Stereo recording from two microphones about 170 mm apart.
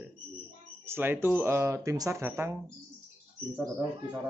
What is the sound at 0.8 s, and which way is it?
Speech, 10° right (ahead or behind).